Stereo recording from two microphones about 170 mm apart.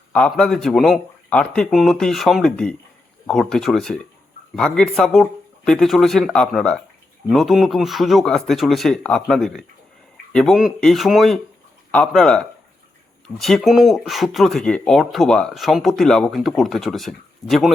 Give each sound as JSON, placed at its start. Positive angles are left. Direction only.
{"t": 0.1, "sound": "speech", "side_deg": 5}